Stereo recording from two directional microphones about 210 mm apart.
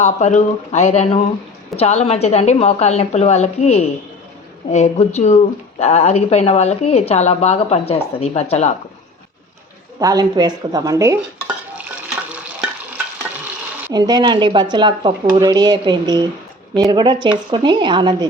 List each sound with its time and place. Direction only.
0.0 s a woman's voice: 35° left (ahead or behind)
10.0 s stir: 15° right (ahead or behind)
13.9 s speech: 20° right (ahead or behind)